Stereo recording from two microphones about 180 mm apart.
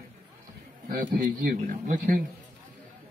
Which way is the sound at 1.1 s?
50° right (ahead or behind).